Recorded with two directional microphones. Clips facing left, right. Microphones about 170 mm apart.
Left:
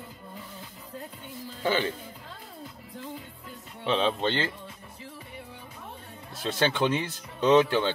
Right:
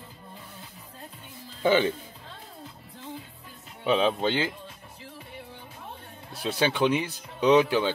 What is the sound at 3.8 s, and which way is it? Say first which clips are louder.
Speech: right 2 dB; 10° right (ahead or behind).